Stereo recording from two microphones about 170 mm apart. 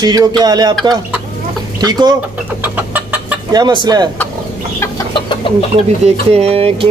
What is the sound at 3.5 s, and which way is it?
Speech, 25° right (ahead or behind).